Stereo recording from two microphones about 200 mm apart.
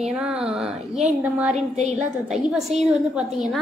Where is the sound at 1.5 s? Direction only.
35° right (ahead or behind).